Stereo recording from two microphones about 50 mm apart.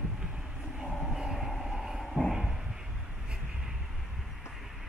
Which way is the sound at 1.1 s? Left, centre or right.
Centre.